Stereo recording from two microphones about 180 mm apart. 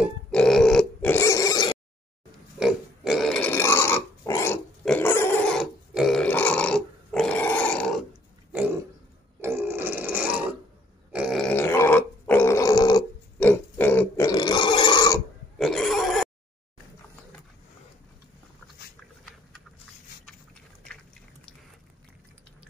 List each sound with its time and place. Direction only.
0.3 s pig: 5° left (ahead or behind); by 1.8 s 20° left (ahead or behind)
2.6 s pig: 5° right (ahead or behind); by 4.6 s 15° left (ahead or behind)
4.8 s a sound: 10° left (ahead or behind)
9.4 s grunt: 15° right (ahead or behind); by 13.0 s 20° left (ahead or behind)
13.4 s a sound: 10° left (ahead or behind)
15.5 s pig: centre (ahead or behind)